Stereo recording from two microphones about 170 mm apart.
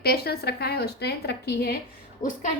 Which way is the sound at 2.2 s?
50° left (ahead or behind).